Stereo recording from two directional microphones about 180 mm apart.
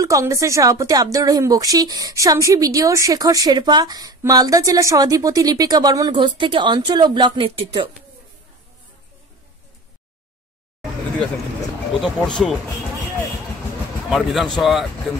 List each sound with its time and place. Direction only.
0.0 s a woman's voice: 15° right (ahead or behind)
12.0 s speech: centre (ahead or behind)
14.1 s speech: centre (ahead or behind)